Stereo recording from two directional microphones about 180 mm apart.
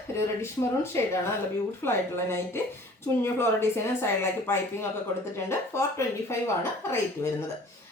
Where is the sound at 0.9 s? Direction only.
15° left (ahead or behind).